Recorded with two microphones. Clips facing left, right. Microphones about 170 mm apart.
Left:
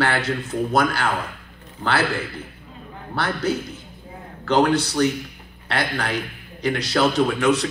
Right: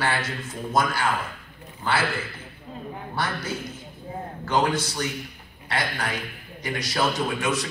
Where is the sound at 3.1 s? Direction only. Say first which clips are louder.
Left 7 dB; 65° left (ahead or behind).